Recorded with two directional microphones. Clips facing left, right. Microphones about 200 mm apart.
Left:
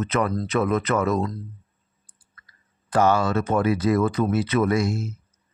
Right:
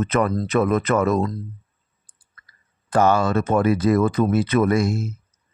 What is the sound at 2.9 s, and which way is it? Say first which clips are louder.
Speech: right 2 dB; 50° right (ahead or behind).